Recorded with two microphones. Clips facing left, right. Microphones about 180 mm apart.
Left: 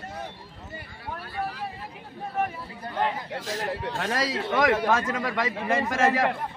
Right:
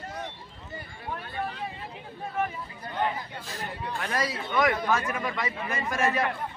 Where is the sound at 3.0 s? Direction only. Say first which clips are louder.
Left 2 dB; 80° left.